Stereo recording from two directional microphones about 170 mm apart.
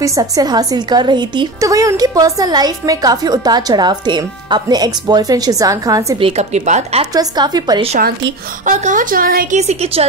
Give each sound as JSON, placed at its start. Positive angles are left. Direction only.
{"t": 0.0, "sound": "a woman's voice", "side_deg": -20}
{"t": 6.2, "sound": "speech", "side_deg": -40}
{"t": 7.2, "sound": "a woman's voice", "side_deg": -25}
{"t": 8.6, "sound": "speech", "side_deg": -50}
{"t": 9.6, "sound": "speech", "side_deg": -40}